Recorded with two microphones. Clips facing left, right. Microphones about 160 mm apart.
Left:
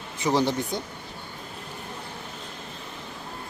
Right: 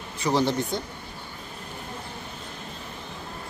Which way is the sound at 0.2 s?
15° left (ahead or behind).